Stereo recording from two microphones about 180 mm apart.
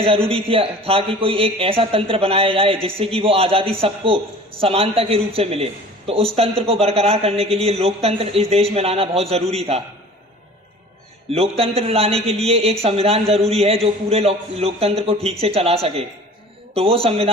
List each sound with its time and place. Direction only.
0.0 s a man's voice: 30° right (ahead or behind)
11.3 s a man's voice: 35° right (ahead or behind)